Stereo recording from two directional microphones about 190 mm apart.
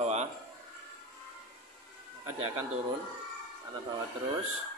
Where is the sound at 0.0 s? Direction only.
35° right (ahead or behind).